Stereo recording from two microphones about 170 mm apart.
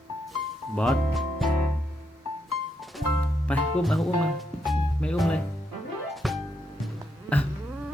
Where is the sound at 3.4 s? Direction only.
5° left (ahead or behind).